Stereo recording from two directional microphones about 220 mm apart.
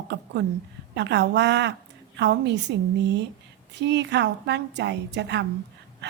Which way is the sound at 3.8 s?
50° right (ahead or behind).